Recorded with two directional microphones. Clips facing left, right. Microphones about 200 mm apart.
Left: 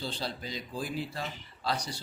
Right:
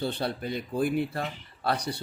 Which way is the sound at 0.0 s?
60° right (ahead or behind).